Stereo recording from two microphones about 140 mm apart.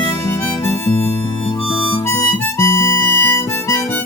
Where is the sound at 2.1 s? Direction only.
20° left (ahead or behind).